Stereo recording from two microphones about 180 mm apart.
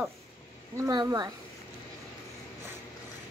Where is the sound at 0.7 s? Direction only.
20° right (ahead or behind).